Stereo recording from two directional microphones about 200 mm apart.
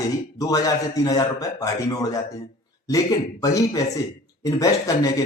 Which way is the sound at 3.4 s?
15° left (ahead or behind).